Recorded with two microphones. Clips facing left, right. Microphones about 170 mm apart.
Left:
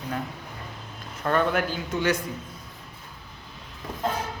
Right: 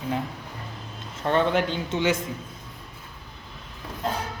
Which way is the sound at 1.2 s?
25° right (ahead or behind).